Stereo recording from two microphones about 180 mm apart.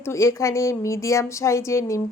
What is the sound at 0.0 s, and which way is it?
Speech, 15° left (ahead or behind).